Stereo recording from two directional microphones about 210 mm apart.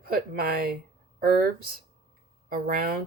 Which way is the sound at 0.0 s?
45° right (ahead or behind).